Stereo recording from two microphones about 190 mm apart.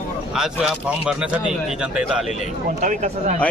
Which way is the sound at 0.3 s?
5° right (ahead or behind).